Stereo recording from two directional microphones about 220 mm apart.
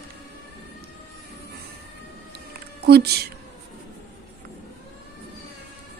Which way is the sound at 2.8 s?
45° right (ahead or behind).